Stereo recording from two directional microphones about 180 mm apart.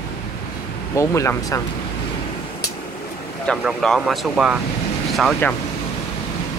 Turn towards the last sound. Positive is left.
turn(degrees=0)  # may be behind; listen again after turning